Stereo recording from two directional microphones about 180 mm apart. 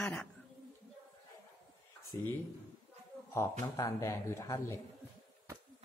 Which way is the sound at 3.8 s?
15° left (ahead or behind).